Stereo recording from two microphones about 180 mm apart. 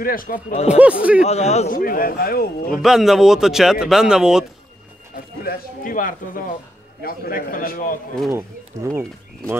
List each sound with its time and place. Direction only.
0.0 s speech: 50° left (ahead or behind)
0.7 s speech: 5° right (ahead or behind)
1.2 s a man's voice: 35° left (ahead or behind)
1.8 s a man's voice: 55° left (ahead or behind)
2.8 s a man's voice: centre (ahead or behind)
5.1 s speech: 55° left (ahead or behind)
8.3 s speech: 15° right (ahead or behind)